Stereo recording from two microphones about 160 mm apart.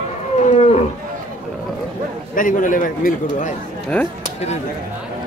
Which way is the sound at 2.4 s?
55° left (ahead or behind).